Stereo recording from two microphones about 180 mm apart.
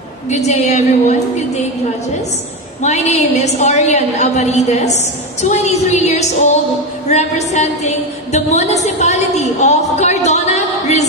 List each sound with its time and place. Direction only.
0.3 s a woman's voice: 40° left (ahead or behind)
2.8 s a woman's voice: 40° left (ahead or behind)